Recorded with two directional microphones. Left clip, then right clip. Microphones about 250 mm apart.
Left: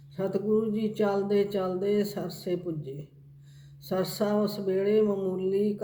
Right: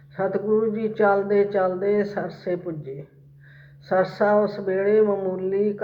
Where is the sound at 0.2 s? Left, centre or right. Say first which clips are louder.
Right 6 dB; left.